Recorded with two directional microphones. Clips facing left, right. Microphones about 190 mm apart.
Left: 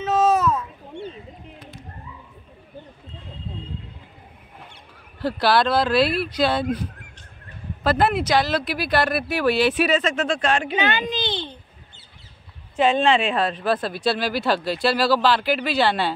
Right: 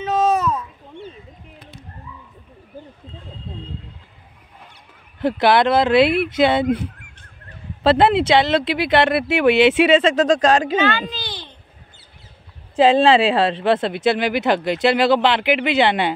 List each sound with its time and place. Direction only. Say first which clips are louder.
0.0 s a sound: even; 5° left (ahead or behind)
5.2 s speech: right 4 dB; 20° right (ahead or behind); by 10.6 s 40° right (ahead or behind)
10.8 s a child's voice: right 2 dB; 15° left (ahead or behind)
12.7 s speech: right 5 dB; 90° right
13.2 s speech: right 5 dB; 30° right (ahead or behind)